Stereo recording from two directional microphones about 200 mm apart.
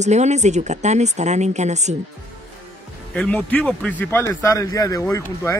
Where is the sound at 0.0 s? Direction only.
35° right (ahead or behind).